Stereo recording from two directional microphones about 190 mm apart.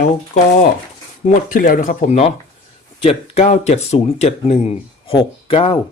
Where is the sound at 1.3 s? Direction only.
45° left (ahead or behind).